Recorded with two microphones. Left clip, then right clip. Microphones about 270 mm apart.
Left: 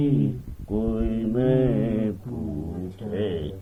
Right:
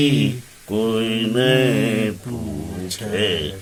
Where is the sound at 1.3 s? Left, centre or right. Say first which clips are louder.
Right 5 dB; centre.